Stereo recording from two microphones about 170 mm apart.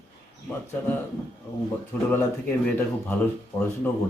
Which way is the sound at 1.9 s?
10° left (ahead or behind).